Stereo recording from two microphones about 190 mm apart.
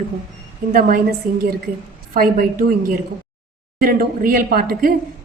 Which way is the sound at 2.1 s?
45° right (ahead or behind).